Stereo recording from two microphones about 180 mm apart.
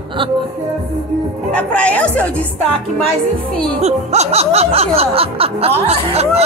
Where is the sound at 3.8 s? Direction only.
35° right (ahead or behind).